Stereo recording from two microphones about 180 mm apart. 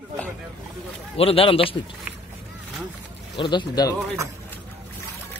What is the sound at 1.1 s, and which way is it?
Speech, 30° left (ahead or behind).